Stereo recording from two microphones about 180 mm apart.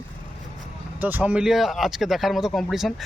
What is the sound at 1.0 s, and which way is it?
Speech, 10° right (ahead or behind).